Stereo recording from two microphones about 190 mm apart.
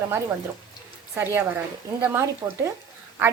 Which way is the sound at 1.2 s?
10° right (ahead or behind).